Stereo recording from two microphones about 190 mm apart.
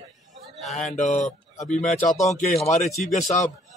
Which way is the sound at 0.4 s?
Centre (ahead or behind).